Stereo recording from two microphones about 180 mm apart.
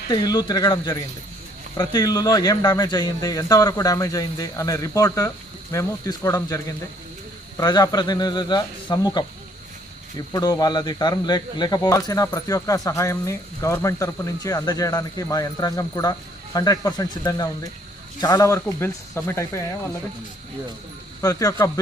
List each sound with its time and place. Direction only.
0.1 s speech: 20° left (ahead or behind)
21.2 s speech: 20° left (ahead or behind)